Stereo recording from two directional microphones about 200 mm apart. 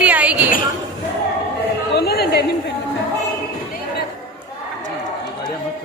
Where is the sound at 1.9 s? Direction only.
50° left (ahead or behind).